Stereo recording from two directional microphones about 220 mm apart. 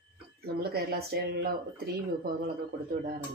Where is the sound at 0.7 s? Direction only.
45° right (ahead or behind).